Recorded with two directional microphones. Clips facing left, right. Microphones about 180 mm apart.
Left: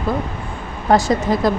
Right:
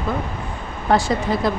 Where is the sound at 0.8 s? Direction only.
40° left (ahead or behind).